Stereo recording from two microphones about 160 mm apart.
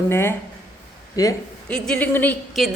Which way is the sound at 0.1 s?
15° left (ahead or behind).